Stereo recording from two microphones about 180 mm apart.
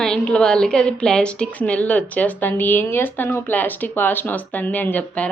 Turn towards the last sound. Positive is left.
turn(degrees=10)  # may be behind; listen again after turning